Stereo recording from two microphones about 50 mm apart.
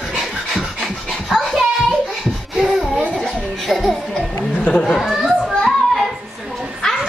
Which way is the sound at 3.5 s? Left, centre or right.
Centre.